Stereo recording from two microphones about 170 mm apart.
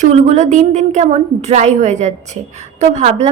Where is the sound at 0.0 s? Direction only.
40° right (ahead or behind).